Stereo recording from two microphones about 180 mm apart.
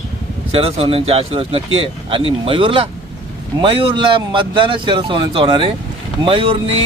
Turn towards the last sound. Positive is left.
turn(degrees=-30)  # may be behind; listen again after turning